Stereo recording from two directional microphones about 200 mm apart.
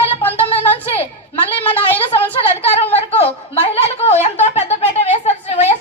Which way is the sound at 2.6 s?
30° left (ahead or behind).